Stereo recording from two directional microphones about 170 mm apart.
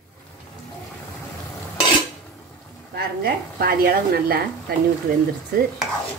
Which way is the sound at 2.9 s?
65° right (ahead or behind).